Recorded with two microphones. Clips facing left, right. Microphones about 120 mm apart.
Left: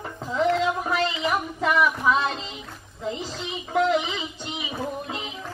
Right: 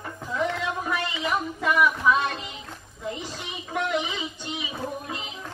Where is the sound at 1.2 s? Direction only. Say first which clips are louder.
Left 1 dB; 25° left (ahead or behind).